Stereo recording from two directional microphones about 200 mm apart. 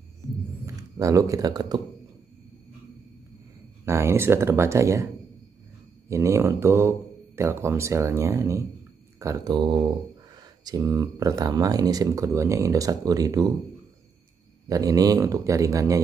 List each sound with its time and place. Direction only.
0.7 s speech: 15° right (ahead or behind)
3.8 s speech: 15° right (ahead or behind)
6.0 s speech: 15° right (ahead or behind)
14.7 s speech: 20° right (ahead or behind)